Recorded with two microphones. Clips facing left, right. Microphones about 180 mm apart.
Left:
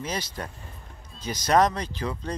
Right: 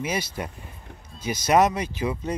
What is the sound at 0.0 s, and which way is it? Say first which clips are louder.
Speech: right 4 dB; 10° right (ahead or behind).